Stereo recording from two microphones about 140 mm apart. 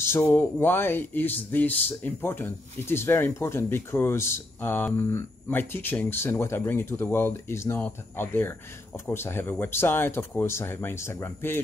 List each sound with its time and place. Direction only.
0.0 s speech: 15° left (ahead or behind)